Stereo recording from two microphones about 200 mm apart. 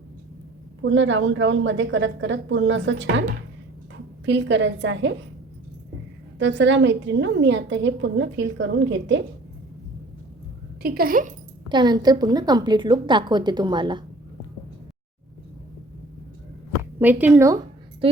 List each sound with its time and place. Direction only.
0.8 s a woman's voice: 65° right (ahead or behind)
4.3 s a woman's voice: 65° right (ahead or behind)
6.4 s a woman's voice: 65° right (ahead or behind)
10.8 s speech: 50° right (ahead or behind)
11.7 s a woman's voice: 20° right (ahead or behind)
17.0 s speech: 10° right (ahead or behind)